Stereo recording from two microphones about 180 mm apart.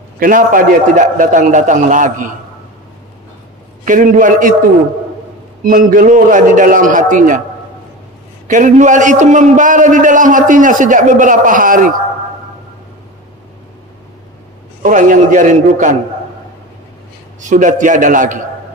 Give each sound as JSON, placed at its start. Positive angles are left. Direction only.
{"t": 0.2, "sound": "a man's voice", "side_deg": -50}
{"t": 3.8, "sound": "a man's voice", "side_deg": -45}
{"t": 5.7, "sound": "a man's voice", "side_deg": -50}
{"t": 8.5, "sound": "a man's voice", "side_deg": -45}
{"t": 14.8, "sound": "a man's voice", "side_deg": -45}
{"t": 17.4, "sound": "a man's voice", "side_deg": -45}